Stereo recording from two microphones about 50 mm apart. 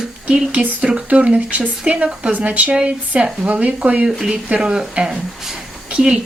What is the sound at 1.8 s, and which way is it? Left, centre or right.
Speech, right.